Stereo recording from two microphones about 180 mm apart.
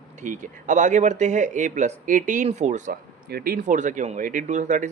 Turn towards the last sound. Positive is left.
turn(degrees=-45)  # may be behind; listen again after turning